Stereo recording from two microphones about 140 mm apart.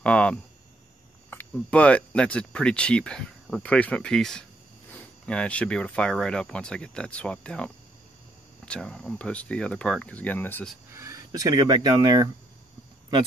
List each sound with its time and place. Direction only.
0.0 s speech: 10° left (ahead or behind)
10.9 s speech: 20° right (ahead or behind)